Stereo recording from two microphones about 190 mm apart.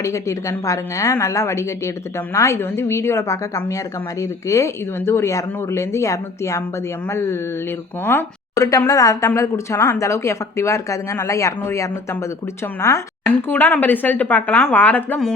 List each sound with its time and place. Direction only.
0.0 s a woman's voice: 15° left (ahead or behind)
8.0 s a woman's voice: 15° left (ahead or behind)